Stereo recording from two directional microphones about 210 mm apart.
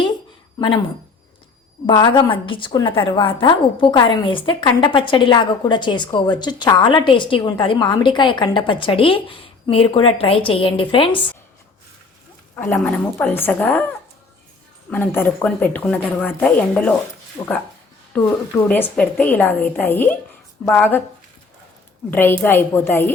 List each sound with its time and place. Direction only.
1.9 s a woman's voice: 20° left (ahead or behind)
12.5 s speech: 10° left (ahead or behind)
22.1 s speech: 10° left (ahead or behind)